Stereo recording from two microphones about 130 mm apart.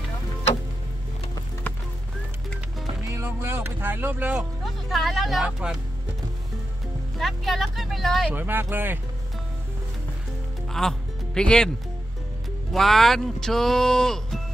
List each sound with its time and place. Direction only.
3.1 s music: 20° right (ahead or behind)
4.9 s speech: centre (ahead or behind)
7.2 s speech: centre (ahead or behind)
8.3 s speech: 15° right (ahead or behind)
10.7 s music: 5° left (ahead or behind)
12.7 s speech: centre (ahead or behind)